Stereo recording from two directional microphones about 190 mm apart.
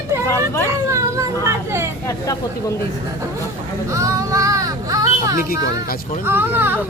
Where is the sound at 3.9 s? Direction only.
15° right (ahead or behind).